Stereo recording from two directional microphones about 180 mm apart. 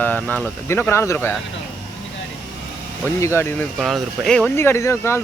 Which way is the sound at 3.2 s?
15° left (ahead or behind).